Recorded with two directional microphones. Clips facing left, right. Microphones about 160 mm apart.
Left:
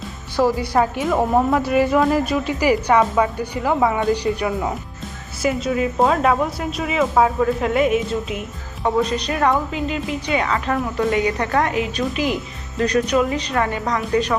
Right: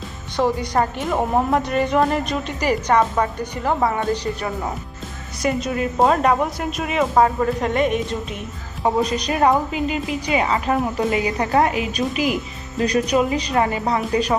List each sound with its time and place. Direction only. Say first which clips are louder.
0.3 s a woman's voice: left 2 dB; 5° left (ahead or behind)
8.8 s speech: even; 10° right (ahead or behind)